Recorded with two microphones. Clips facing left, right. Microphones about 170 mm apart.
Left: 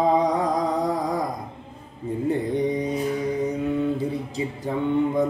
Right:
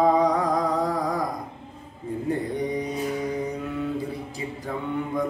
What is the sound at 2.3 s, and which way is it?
Carnatic music, 20° left (ahead or behind).